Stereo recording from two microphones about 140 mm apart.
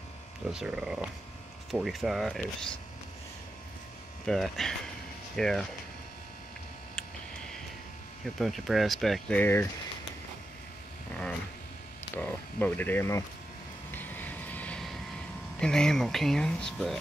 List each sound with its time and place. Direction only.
0.5 s speech: 5° right (ahead or behind)
4.3 s speech: 5° left (ahead or behind)
8.4 s speech: centre (ahead or behind)
9.4 s speech: 15° left (ahead or behind)
12.2 s speech: 15° left (ahead or behind)
13.9 s vehicle: 15° left (ahead or behind)
15.6 s speech: 5° left (ahead or behind)